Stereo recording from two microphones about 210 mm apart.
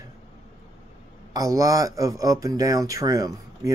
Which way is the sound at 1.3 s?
15° right (ahead or behind).